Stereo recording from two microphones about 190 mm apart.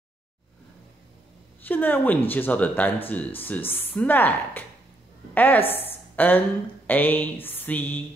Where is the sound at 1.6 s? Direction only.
10° left (ahead or behind).